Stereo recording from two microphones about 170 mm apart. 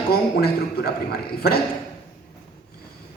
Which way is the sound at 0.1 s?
70° left (ahead or behind).